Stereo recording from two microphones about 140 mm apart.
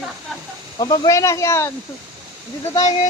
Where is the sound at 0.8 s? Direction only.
25° left (ahead or behind).